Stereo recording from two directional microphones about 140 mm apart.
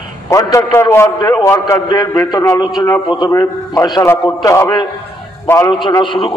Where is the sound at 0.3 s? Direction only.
25° left (ahead or behind).